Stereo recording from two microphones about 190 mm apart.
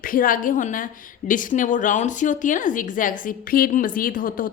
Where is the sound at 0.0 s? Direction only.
45° left (ahead or behind).